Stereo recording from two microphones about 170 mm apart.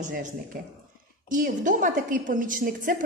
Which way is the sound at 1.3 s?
50° right (ahead or behind).